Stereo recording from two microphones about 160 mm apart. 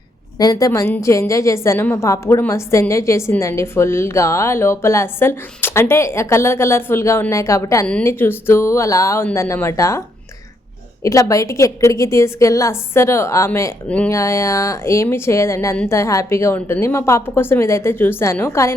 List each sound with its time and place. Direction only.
0.3 s a woman's voice: 25° left (ahead or behind)
11.0 s a woman's voice: 20° left (ahead or behind)